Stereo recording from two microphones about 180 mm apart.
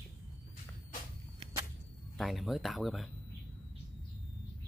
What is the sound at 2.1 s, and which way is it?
Speech, centre (ahead or behind).